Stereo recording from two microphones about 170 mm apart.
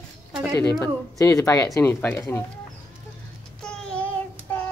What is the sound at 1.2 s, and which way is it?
Speech, 20° left (ahead or behind).